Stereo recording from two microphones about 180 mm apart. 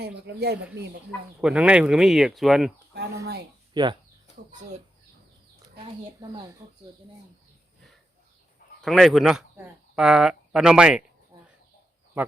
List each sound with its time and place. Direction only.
0.0 s speech: 60° right (ahead or behind)
1.4 s speech: 5° right (ahead or behind)
3.8 s speech: 25° right (ahead or behind)
8.8 s speech: centre (ahead or behind)